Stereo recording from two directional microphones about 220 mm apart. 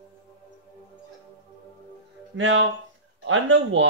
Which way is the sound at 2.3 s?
60° right (ahead or behind).